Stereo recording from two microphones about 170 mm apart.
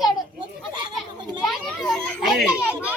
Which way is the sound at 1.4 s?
Centre (ahead or behind).